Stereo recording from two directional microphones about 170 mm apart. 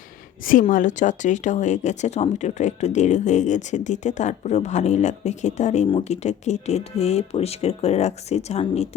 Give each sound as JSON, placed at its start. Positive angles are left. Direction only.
{"t": 0.7, "sound": "speech", "side_deg": 50}